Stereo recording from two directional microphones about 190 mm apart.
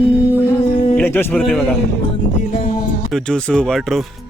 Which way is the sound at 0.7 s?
35° left (ahead or behind).